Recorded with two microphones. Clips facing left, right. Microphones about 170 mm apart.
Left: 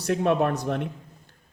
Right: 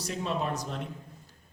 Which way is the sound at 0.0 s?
60° left (ahead or behind).